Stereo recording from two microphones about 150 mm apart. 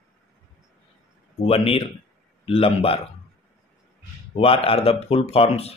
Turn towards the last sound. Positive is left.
turn(degrees=40)  # may be behind; listen again after turning